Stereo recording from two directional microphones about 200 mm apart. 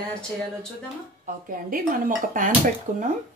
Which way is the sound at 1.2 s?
40° right (ahead or behind).